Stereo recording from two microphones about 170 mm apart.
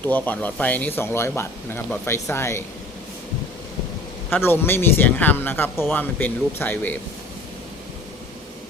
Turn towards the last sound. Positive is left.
turn(degrees=10)  # may be behind; listen again after turning